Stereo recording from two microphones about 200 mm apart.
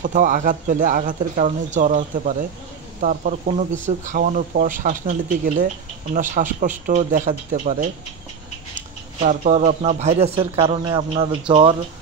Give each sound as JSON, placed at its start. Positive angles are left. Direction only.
{"t": 0.0, "sound": "speech", "side_deg": -40}
{"t": 9.2, "sound": "speech", "side_deg": -35}